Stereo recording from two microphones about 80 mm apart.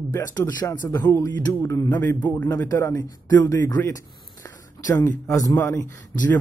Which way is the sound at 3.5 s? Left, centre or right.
Left.